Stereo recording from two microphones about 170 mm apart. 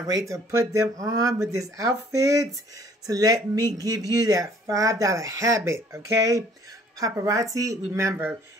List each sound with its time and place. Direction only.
0.0 s speech: 20° right (ahead or behind)